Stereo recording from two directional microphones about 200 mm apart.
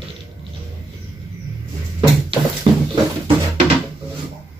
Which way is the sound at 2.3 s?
25° right (ahead or behind).